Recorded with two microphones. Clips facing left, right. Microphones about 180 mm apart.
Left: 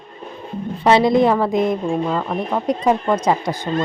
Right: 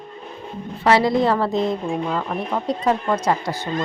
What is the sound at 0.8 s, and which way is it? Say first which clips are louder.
A woman's voice: left 3 dB; 20° left (ahead or behind).